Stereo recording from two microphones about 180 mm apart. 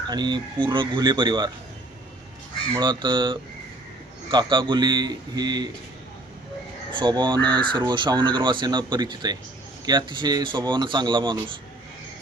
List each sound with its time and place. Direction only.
0.1 s speech: 25° right (ahead or behind)
2.7 s speech: 25° right (ahead or behind)
7.0 s speech: 25° right (ahead or behind)